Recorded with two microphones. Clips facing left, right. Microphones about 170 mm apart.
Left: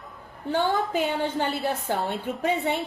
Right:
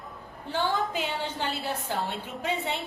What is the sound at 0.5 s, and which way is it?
A woman's voice, 50° left (ahead or behind).